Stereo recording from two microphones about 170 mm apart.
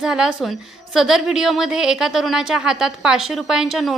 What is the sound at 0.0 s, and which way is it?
A woman's voice, 5° right (ahead or behind).